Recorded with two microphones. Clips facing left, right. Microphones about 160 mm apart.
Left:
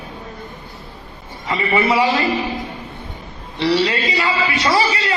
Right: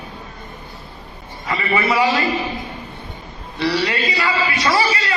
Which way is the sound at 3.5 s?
25° left (ahead or behind).